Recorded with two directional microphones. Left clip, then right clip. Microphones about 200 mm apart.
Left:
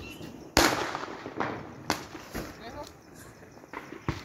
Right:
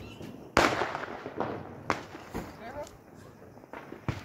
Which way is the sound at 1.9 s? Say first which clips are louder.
Even; 50° left (ahead or behind).